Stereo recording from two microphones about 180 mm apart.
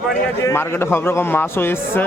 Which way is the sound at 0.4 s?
15° left (ahead or behind).